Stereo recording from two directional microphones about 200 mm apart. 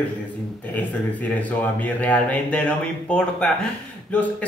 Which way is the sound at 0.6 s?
10° left (ahead or behind).